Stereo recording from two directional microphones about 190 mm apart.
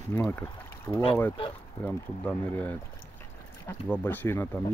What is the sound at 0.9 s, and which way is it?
Speech, 30° left (ahead or behind).